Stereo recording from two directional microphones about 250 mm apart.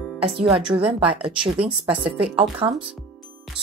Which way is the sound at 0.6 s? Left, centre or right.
Centre.